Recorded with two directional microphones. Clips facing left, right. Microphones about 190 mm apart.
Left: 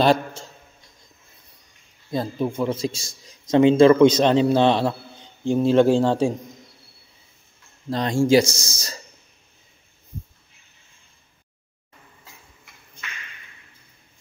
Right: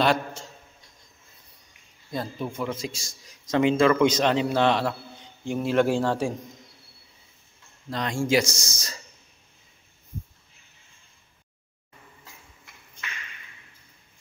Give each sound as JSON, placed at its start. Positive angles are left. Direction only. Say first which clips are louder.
{"t": 0.0, "sound": "a sound", "louder": "left 5 dB", "side_deg": 30}
{"t": 2.1, "sound": "a man's voice", "louder": "left 6 dB", "side_deg": 30}
{"t": 7.9, "sound": "a man's voice", "louder": "left 6 dB", "side_deg": 30}